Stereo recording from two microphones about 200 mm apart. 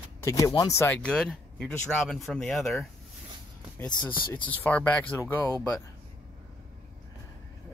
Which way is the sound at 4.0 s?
10° left (ahead or behind).